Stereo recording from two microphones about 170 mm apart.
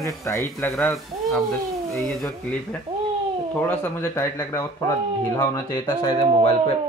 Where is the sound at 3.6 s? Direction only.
15° left (ahead or behind).